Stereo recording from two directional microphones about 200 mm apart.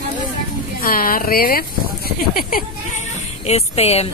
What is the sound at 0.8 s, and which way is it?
Speech, 45° left (ahead or behind).